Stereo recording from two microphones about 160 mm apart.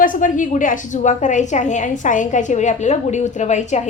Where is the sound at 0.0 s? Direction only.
55° left (ahead or behind).